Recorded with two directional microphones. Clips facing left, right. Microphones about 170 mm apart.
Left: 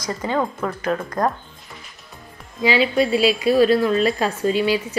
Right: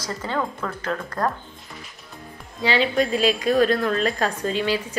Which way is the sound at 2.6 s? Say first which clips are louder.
Left 3 dB; 10° left (ahead or behind).